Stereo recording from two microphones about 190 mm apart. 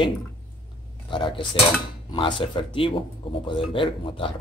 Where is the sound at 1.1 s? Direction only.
25° left (ahead or behind).